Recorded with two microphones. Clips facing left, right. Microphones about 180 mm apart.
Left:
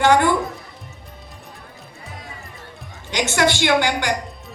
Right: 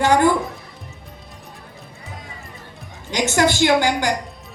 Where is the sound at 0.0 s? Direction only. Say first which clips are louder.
Even; 40° right (ahead or behind).